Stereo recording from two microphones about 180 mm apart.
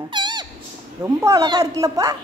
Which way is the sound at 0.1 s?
25° right (ahead or behind).